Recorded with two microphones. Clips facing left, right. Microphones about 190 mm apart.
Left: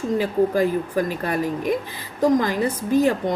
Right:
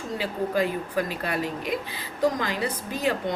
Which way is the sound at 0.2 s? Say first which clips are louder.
Left 5 dB; 45° left (ahead or behind).